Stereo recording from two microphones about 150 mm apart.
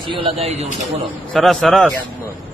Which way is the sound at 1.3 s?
Centre (ahead or behind).